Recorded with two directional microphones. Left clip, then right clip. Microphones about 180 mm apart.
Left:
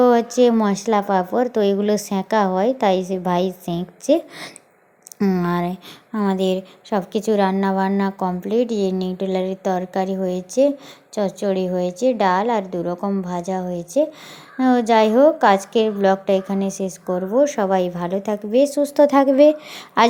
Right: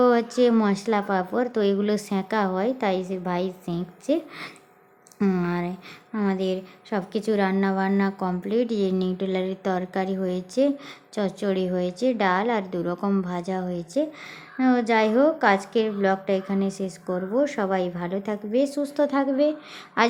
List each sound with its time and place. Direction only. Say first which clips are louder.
0.0 s a woman's voice: left 5 dB; 15° left (ahead or behind)